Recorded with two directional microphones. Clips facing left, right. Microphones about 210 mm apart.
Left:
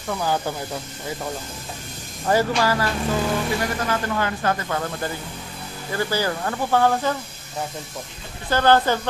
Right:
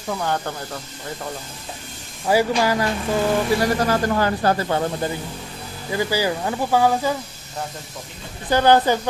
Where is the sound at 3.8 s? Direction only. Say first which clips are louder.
Right 4 dB; 35° right (ahead or behind); by 7.1 s 10° right (ahead or behind).